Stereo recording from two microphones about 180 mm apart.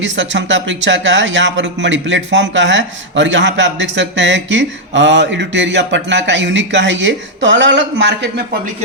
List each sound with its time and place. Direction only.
0.0 s speech: 90° right